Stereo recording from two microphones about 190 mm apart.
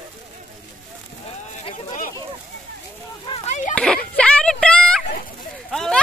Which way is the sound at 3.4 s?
40° left (ahead or behind).